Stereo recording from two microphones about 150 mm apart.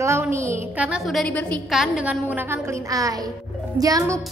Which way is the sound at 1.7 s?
5° right (ahead or behind).